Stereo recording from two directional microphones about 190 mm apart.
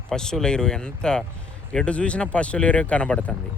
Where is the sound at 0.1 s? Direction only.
5° left (ahead or behind).